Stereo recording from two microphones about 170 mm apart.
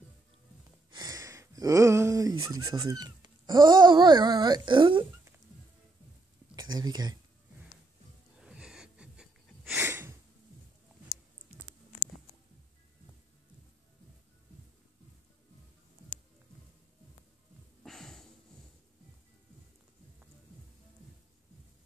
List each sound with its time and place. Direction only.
0.9 s speech: 20° right (ahead or behind)
6.5 s speech: 25° right (ahead or behind)
8.4 s wheeze: 5° right (ahead or behind)
17.8 s a sound: 5° left (ahead or behind)